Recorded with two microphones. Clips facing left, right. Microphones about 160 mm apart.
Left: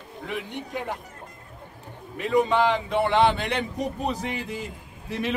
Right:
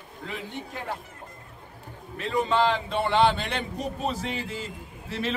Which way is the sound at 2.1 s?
15° left (ahead or behind).